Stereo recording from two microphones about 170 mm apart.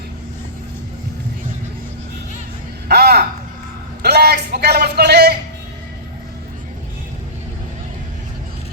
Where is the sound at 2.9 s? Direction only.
70° right (ahead or behind).